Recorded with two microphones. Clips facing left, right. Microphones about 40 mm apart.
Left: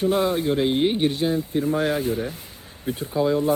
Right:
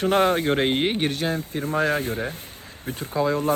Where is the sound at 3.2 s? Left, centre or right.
Right.